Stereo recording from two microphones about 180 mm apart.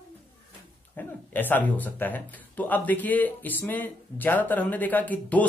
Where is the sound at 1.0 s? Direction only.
10° left (ahead or behind).